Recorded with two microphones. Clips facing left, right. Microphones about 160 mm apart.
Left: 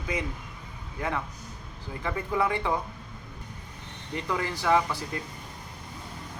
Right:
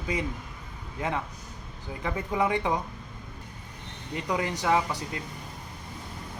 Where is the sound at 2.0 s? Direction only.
20° right (ahead or behind).